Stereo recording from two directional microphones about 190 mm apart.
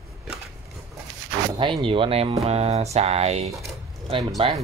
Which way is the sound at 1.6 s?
25° right (ahead or behind).